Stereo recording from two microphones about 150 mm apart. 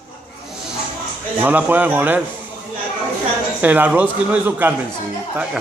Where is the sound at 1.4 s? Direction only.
10° right (ahead or behind).